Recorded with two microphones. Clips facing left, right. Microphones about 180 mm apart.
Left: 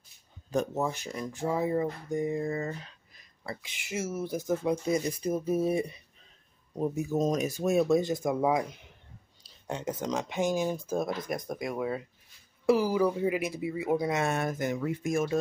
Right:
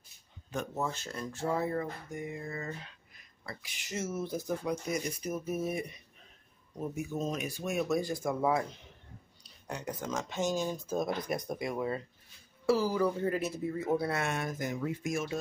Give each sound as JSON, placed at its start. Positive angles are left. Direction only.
{"t": 0.7, "sound": "speech", "side_deg": 15}
{"t": 2.1, "sound": "speech", "side_deg": 35}
{"t": 3.9, "sound": "speech", "side_deg": 10}
{"t": 4.6, "sound": "speech", "side_deg": 30}
{"t": 12.6, "sound": "speech", "side_deg": 15}
{"t": 14.2, "sound": "speech", "side_deg": 45}
{"t": 14.6, "sound": "speech", "side_deg": 60}